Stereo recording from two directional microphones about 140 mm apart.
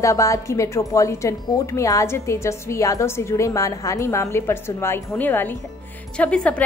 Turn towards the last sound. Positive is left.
turn(degrees=10)  # may be behind; listen again after turning